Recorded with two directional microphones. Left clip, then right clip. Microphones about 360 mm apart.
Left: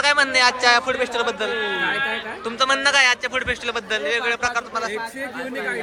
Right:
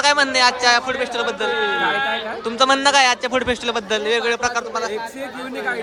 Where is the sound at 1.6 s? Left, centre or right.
Right.